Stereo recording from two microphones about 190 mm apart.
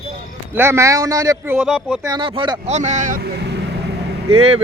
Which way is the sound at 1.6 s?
5° right (ahead or behind).